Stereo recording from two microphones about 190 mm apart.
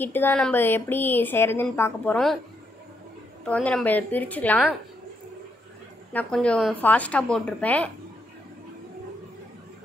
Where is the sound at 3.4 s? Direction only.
5° left (ahead or behind).